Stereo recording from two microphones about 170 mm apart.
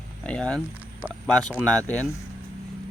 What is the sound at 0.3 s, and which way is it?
Speech, 5° left (ahead or behind).